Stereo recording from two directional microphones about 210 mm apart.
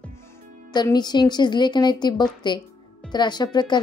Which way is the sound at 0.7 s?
20° left (ahead or behind).